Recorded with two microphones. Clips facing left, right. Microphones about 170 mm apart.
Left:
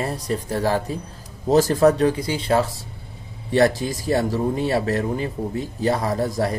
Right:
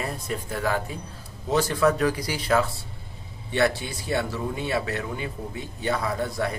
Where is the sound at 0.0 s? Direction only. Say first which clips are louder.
Left 5 dB; 35° left (ahead or behind).